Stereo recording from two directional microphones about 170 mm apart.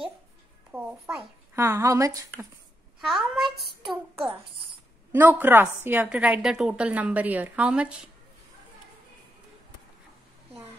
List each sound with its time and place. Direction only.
0.7 s a woman's voice: 10° right (ahead or behind)
3.0 s a child's voice: centre (ahead or behind)
5.1 s a woman's voice: 10° right (ahead or behind)